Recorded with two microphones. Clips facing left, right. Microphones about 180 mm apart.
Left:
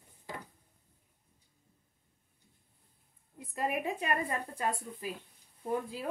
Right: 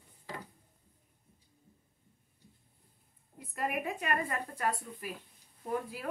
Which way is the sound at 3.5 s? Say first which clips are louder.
Left 2 dB; 30° left (ahead or behind).